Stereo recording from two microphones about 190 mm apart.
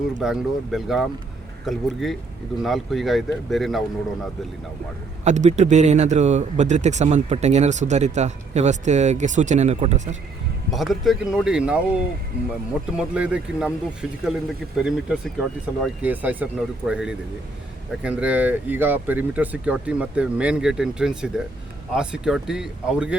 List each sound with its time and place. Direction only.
0.2 s speech: 5° right (ahead or behind)
5.2 s speech: 40° right (ahead or behind)
10.7 s speech: centre (ahead or behind)
13.0 s speech: 5° right (ahead or behind)